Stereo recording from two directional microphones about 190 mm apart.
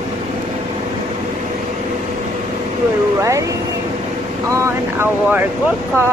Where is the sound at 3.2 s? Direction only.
15° right (ahead or behind).